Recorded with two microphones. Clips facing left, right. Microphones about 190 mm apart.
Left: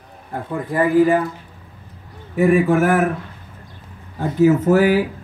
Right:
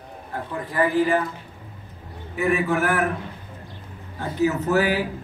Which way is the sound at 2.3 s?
45° left (ahead or behind).